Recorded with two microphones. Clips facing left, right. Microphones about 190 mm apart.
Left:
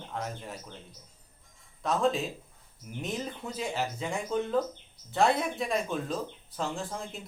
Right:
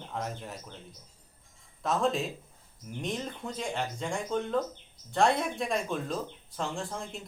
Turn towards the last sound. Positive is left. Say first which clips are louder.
# even
turn(degrees=0)  # may be behind; listen again after turning